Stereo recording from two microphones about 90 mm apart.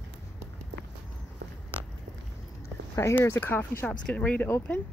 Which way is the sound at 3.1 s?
25° left (ahead or behind).